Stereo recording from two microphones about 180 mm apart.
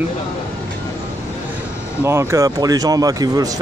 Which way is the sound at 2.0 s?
15° right (ahead or behind).